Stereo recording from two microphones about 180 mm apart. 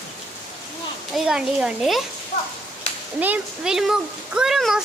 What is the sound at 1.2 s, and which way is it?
Speech, 5° right (ahead or behind).